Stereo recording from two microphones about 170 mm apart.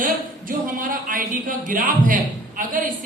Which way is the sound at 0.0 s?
55° right (ahead or behind).